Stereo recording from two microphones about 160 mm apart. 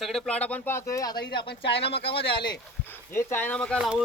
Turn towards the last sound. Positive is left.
turn(degrees=-5)  # may be behind; listen again after turning